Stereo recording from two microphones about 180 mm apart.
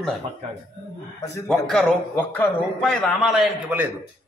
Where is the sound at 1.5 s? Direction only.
5° left (ahead or behind).